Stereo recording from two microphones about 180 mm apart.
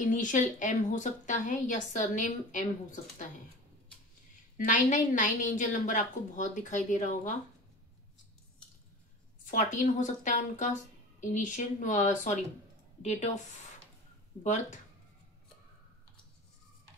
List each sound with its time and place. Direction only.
0.0 s a woman's voice: 45° left (ahead or behind)
4.6 s a woman's voice: 45° left (ahead or behind)
9.5 s a woman's voice: 45° left (ahead or behind)
14.4 s a woman's voice: 40° left (ahead or behind)